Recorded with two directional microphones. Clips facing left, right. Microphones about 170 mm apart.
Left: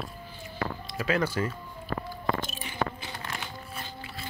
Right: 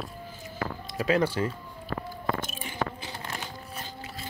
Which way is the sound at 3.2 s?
35° right (ahead or behind).